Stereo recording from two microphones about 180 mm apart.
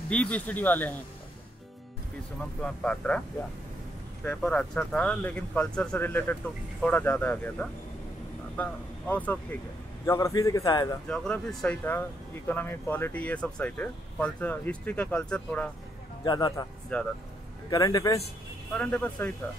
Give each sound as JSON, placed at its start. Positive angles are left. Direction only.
{"t": 0.1, "sound": "speech", "side_deg": 5}
{"t": 2.6, "sound": "speech", "side_deg": 5}
{"t": 4.2, "sound": "a man's voice", "side_deg": 10}
{"t": 11.1, "sound": "speech", "side_deg": 5}
{"t": 16.3, "sound": "a man's voice", "side_deg": 25}
{"t": 16.9, "sound": "speech", "side_deg": 10}
{"t": 17.6, "sound": "a man's voice", "side_deg": 20}
{"t": 18.8, "sound": "speech", "side_deg": 5}